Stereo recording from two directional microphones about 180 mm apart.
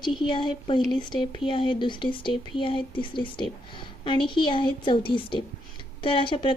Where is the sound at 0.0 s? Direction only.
25° left (ahead or behind).